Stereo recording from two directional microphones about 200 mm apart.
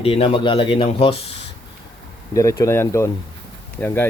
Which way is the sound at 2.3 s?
15° left (ahead or behind).